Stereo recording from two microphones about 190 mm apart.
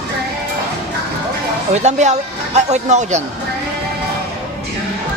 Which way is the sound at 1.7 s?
40° right (ahead or behind).